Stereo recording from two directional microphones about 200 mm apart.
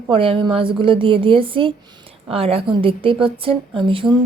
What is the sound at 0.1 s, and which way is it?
A woman's voice, 25° right (ahead or behind).